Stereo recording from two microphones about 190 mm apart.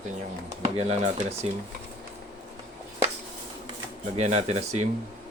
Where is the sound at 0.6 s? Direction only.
35° right (ahead or behind).